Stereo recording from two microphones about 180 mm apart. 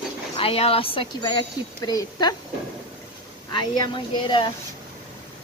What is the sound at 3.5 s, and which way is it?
Speech, 25° left (ahead or behind).